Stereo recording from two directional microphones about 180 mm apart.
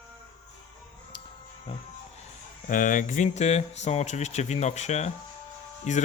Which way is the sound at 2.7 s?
45° left (ahead or behind).